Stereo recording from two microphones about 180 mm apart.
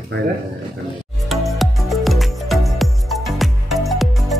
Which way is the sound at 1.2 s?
Centre (ahead or behind).